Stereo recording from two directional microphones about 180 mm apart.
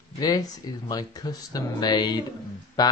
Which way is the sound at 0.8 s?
20° left (ahead or behind).